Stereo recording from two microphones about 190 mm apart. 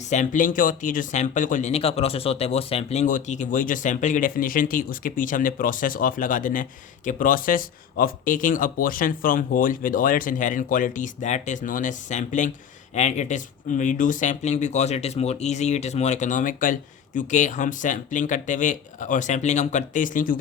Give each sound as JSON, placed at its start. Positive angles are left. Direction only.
{"t": 0.1, "sound": "speech", "side_deg": 40}